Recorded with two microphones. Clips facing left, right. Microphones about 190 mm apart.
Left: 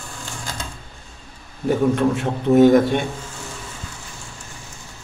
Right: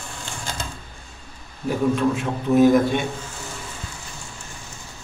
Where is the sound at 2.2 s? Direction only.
55° left (ahead or behind).